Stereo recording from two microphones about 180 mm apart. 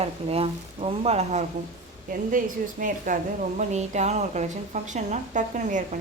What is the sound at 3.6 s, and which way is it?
Speech, 40° right (ahead or behind).